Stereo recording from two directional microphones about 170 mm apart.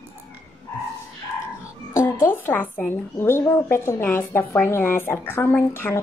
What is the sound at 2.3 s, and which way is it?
Speech, 10° left (ahead or behind).